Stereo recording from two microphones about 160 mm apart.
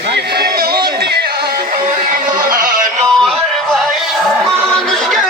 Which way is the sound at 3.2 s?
Centre (ahead or behind).